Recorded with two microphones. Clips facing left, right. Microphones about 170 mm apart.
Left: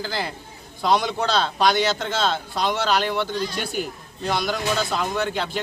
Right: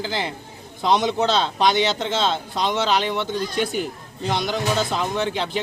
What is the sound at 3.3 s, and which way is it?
Speech, 50° right (ahead or behind).